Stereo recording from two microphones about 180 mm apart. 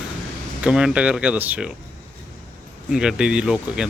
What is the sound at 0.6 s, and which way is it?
Speech, 5° right (ahead or behind).